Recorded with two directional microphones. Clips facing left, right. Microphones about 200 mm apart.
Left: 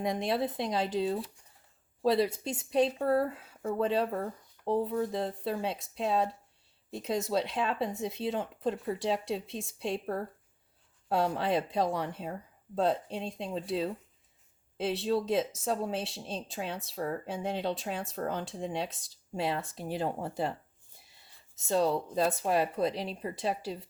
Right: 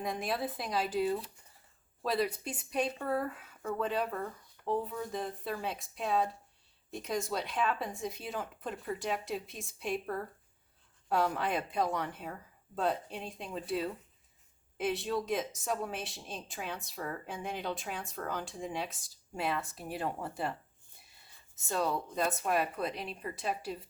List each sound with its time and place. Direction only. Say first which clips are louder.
0.0 s speech: left 5 dB; 25° left (ahead or behind)
15.0 s speech: left 5 dB; 30° left (ahead or behind)
21.7 s speech: left 5 dB; 25° left (ahead or behind)